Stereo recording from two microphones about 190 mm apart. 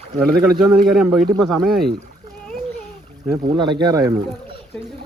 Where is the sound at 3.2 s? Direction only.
20° right (ahead or behind).